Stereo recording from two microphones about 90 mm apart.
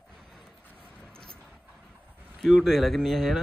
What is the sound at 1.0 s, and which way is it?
Vehicle, 10° left (ahead or behind).